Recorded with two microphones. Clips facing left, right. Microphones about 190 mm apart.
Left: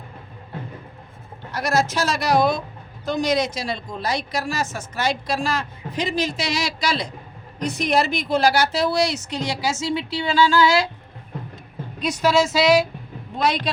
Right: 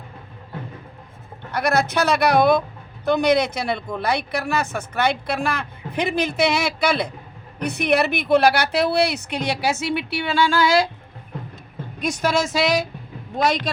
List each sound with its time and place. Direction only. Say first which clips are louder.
1.5 s speech: right 1 dB; 60° right (ahead or behind)
12.1 s a woman's voice: left 3 dB; 50° right (ahead or behind)